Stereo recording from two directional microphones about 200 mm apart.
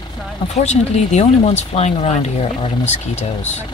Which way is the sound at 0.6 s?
35° left (ahead or behind).